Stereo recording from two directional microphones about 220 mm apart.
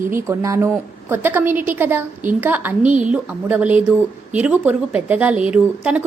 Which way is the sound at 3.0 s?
5° right (ahead or behind).